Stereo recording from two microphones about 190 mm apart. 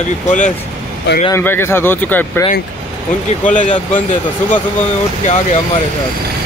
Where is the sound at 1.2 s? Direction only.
10° left (ahead or behind).